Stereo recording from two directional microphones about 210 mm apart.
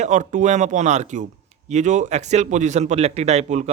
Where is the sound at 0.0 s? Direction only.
35° right (ahead or behind).